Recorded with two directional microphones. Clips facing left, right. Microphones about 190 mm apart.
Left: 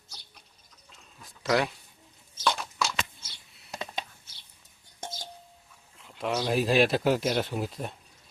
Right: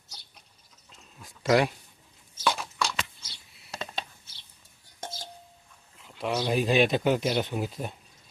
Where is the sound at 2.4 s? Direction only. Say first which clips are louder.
Even; centre (ahead or behind).